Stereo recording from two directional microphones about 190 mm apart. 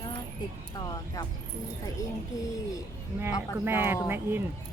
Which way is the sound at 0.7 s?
20° left (ahead or behind).